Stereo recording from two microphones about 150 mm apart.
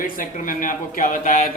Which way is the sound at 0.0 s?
65° left (ahead or behind).